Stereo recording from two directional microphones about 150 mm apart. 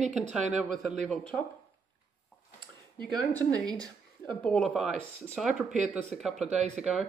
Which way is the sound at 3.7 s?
30° right (ahead or behind).